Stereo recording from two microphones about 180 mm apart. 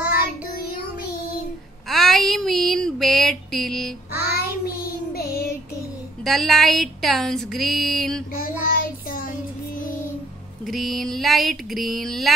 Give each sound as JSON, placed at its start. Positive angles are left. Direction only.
{"t": 1.9, "sound": "a sound", "side_deg": 0}
{"t": 4.1, "sound": "child singing", "side_deg": 60}
{"t": 6.2, "sound": "speech", "side_deg": 0}
{"t": 8.4, "sound": "child singing", "side_deg": 50}
{"t": 10.7, "sound": "speech", "side_deg": 0}